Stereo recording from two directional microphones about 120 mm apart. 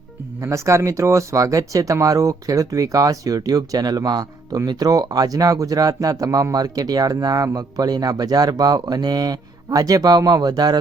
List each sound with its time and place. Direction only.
0.4 s speech: 25° right (ahead or behind)